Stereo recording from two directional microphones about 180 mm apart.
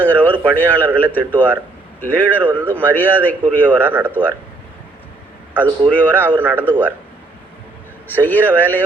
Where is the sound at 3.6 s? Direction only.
10° right (ahead or behind).